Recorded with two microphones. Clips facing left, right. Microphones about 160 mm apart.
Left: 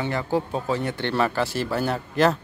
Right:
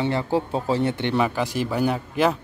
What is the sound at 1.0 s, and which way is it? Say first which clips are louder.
A man's voice: right 1 dB; 15° right (ahead or behind).